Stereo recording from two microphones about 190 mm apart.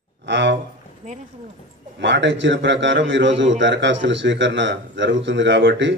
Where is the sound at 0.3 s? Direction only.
70° right (ahead or behind).